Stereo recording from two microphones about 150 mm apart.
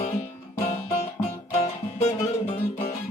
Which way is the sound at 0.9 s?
40° left (ahead or behind).